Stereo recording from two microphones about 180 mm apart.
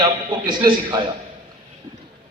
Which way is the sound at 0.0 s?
25° right (ahead or behind).